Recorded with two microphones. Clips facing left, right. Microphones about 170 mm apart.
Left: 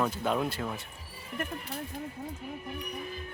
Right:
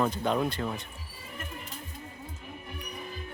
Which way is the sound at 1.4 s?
65° left (ahead or behind).